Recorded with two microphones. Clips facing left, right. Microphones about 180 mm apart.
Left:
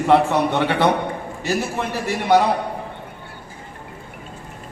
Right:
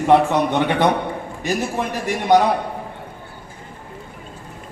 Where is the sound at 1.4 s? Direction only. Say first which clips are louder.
Right 1 dB; 15° right (ahead or behind).